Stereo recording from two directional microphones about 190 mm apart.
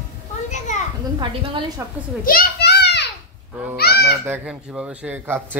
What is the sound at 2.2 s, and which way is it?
Children playing, 50° left (ahead or behind).